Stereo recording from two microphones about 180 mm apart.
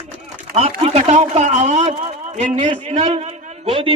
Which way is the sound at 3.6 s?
30° right (ahead or behind).